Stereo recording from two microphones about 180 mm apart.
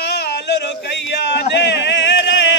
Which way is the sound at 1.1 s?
75° left (ahead or behind).